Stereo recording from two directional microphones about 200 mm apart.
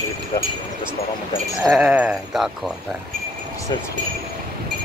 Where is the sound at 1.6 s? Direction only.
5° right (ahead or behind).